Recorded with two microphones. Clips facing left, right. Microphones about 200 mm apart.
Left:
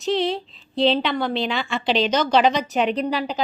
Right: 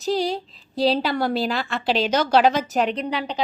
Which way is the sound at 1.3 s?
5° right (ahead or behind).